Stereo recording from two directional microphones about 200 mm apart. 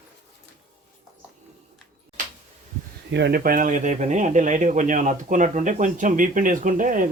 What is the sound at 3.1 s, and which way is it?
Speech, 55° right (ahead or behind).